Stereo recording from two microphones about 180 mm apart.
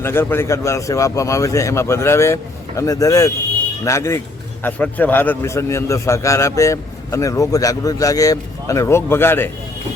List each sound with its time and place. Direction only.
0.0 s a man's voice: 10° left (ahead or behind)